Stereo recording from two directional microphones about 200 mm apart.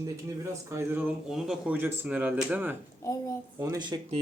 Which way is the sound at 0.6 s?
10° right (ahead or behind).